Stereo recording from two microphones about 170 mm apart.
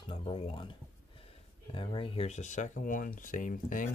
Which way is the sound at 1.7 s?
30° left (ahead or behind).